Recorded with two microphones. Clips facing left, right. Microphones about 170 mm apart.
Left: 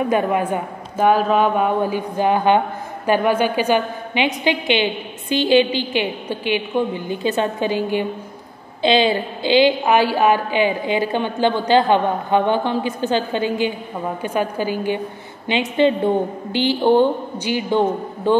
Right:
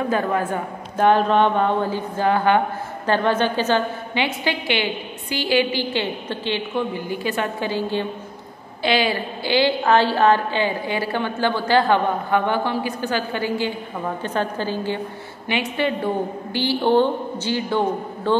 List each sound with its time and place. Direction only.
0.1 s a woman's voice: 15° left (ahead or behind)